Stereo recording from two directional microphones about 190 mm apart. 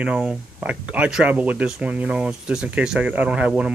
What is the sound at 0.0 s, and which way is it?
Speech, 5° right (ahead or behind).